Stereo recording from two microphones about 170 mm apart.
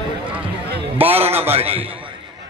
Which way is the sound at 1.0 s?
35° right (ahead or behind).